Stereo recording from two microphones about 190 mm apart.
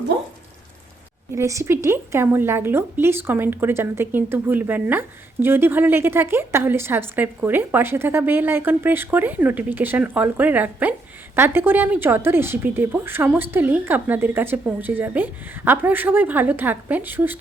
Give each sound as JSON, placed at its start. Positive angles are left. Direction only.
{"t": 1.3, "sound": "a woman's voice", "side_deg": -15}